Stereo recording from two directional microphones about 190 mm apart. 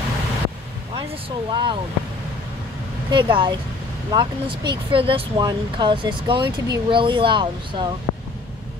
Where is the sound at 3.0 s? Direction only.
25° right (ahead or behind).